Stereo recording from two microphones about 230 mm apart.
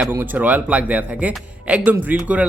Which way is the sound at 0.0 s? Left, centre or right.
Centre.